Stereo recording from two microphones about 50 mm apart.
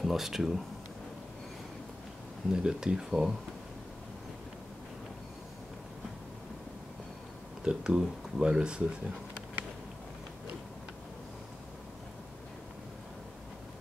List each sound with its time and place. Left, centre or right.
0.0 s speech: centre
2.5 s speech: centre
7.6 s speech: centre